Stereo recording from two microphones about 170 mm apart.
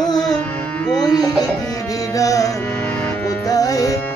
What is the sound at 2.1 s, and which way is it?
Music, 20° left (ahead or behind).